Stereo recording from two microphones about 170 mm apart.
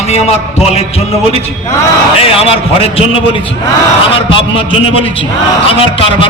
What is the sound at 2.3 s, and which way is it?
A man's voice, 35° left (ahead or behind).